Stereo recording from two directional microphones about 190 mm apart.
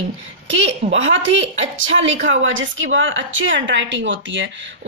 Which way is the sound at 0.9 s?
85° right.